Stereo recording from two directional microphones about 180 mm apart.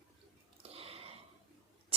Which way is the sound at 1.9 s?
30° right (ahead or behind).